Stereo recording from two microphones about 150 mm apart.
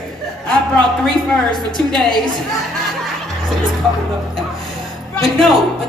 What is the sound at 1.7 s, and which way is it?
Speech, centre (ahead or behind).